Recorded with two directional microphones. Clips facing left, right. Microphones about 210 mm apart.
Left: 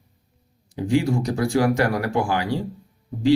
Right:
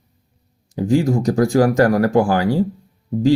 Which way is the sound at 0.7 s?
45° right (ahead or behind).